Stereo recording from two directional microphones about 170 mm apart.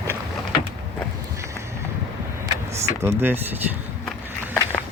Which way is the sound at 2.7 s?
15° right (ahead or behind).